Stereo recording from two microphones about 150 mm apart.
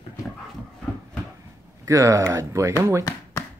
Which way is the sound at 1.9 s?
20° right (ahead or behind).